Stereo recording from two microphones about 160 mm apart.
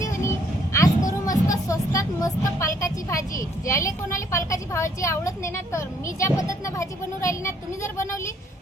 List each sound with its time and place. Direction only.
0.0 s vehicle: 15° left (ahead or behind)
1.2 s speech: 20° left (ahead or behind)